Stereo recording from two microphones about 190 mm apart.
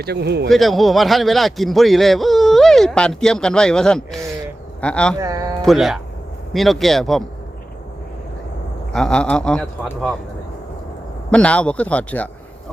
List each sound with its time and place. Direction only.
0.0 s speech: 60° right (ahead or behind)
0.4 s a man's voice: centre (ahead or behind)
5.2 s speech: 15° right (ahead or behind)
5.6 s a man's voice: centre (ahead or behind)
8.9 s a man's voice: 5° left (ahead or behind)
11.3 s speech: 5° left (ahead or behind)